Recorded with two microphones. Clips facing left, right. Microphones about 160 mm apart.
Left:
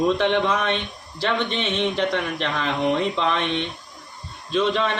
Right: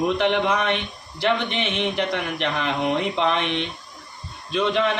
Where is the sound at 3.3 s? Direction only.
15° right (ahead or behind).